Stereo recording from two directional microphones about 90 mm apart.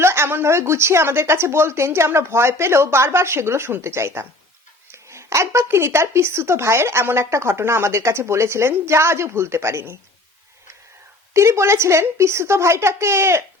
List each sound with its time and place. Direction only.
0.0 s a woman's voice: 30° right (ahead or behind)
11.3 s speech: 30° right (ahead or behind)